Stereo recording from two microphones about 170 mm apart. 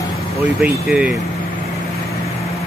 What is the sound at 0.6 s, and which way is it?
Speech, 5° right (ahead or behind).